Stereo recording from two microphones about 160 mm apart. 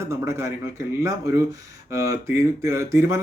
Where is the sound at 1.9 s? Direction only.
15° right (ahead or behind).